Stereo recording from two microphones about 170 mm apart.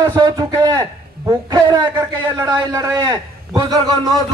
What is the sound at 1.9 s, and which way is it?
Speech, 10° right (ahead or behind).